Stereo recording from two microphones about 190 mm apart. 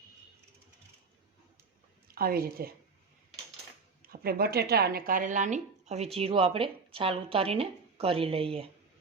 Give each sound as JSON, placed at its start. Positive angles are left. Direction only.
{"t": 2.1, "sound": "a woman's voice", "side_deg": -50}
{"t": 4.0, "sound": "a woman's voice", "side_deg": -50}